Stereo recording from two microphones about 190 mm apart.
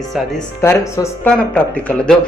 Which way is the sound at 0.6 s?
10° left (ahead or behind).